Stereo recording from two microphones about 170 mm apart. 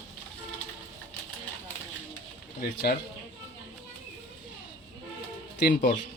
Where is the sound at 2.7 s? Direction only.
70° left (ahead or behind).